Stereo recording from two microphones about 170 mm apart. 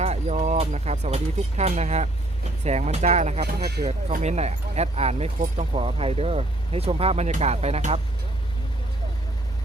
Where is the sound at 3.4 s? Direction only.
70° right (ahead or behind).